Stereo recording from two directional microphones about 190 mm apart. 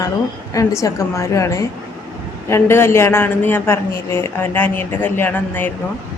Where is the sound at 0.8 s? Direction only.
15° left (ahead or behind).